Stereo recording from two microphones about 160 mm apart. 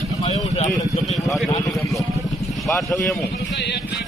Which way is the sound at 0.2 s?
40° left (ahead or behind).